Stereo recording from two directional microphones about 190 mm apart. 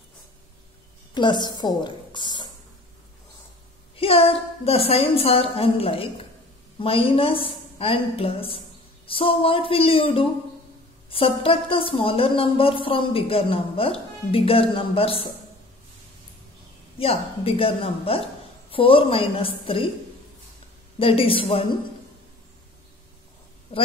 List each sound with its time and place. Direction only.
1.1 s a woman's voice: 25° left (ahead or behind)
3.9 s speech: 30° left (ahead or behind)
17.0 s speech: 30° left (ahead or behind)
21.0 s speech: 30° left (ahead or behind)